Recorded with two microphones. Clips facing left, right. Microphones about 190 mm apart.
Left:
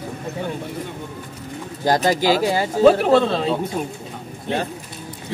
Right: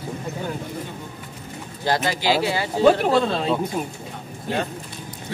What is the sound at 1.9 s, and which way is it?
Speech, 45° left (ahead or behind).